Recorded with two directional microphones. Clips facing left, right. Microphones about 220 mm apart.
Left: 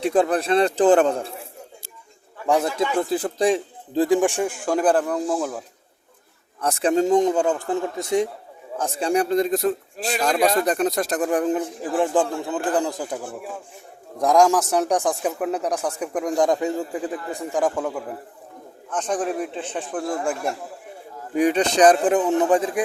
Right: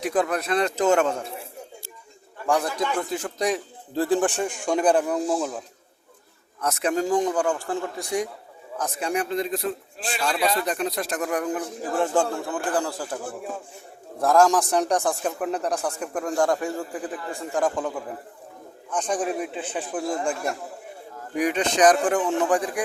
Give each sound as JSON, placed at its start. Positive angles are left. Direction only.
{"t": 0.0, "sound": "a man's voice", "side_deg": 30}
{"t": 2.5, "sound": "a man's voice", "side_deg": 25}
{"t": 3.1, "sound": "a man's voice", "side_deg": 35}
{"t": 3.9, "sound": "a man's voice", "side_deg": 15}
{"t": 6.6, "sound": "a man's voice", "side_deg": 30}
{"t": 11.9, "sound": "a man's voice", "side_deg": 15}
{"t": 14.2, "sound": "a man's voice", "side_deg": 15}
{"t": 18.9, "sound": "a man's voice", "side_deg": 0}
{"t": 21.3, "sound": "a man's voice", "side_deg": 35}